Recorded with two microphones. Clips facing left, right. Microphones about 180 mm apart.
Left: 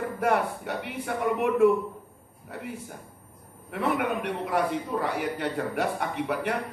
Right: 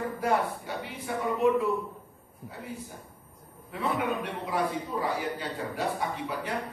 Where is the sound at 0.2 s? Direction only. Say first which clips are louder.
Left 3 dB; 60° left (ahead or behind).